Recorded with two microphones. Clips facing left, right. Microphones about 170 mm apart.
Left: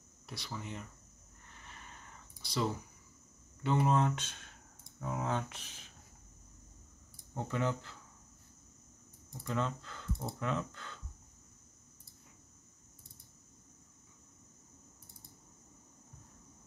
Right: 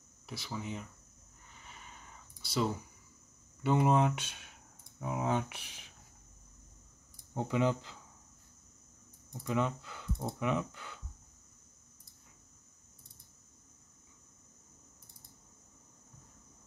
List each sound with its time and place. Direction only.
0.3 s speech: 5° right (ahead or behind)
1.5 s a sound: 10° right (ahead or behind)
2.4 s speech: 5° right (ahead or behind)
7.3 s speech: 15° right (ahead or behind)
9.4 s speech: 15° right (ahead or behind)